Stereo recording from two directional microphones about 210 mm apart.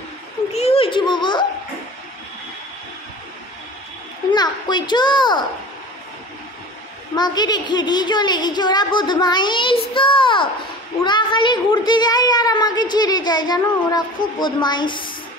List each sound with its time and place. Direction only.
0.5 s children playing: 30° left (ahead or behind)
4.3 s speech: 20° left (ahead or behind)
7.2 s speech: 20° left (ahead or behind)